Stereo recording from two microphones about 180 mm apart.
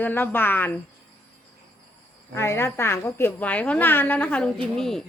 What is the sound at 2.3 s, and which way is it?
A woman's voice, 15° left (ahead or behind).